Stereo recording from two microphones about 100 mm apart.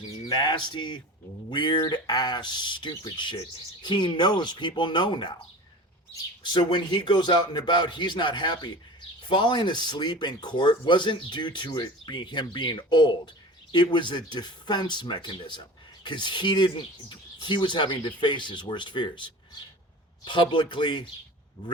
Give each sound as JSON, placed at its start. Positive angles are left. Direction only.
{"t": 0.3, "sound": "speech", "side_deg": 45}
{"t": 6.4, "sound": "speech", "side_deg": 50}